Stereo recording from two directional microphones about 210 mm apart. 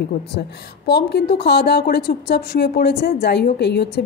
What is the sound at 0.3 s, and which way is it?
A woman's voice, 50° left (ahead or behind).